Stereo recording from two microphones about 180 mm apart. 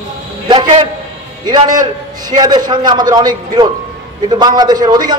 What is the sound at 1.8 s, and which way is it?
A man's voice, 25° right (ahead or behind).